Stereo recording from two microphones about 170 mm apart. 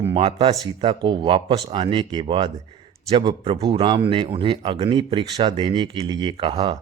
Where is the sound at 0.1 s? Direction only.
30° right (ahead or behind).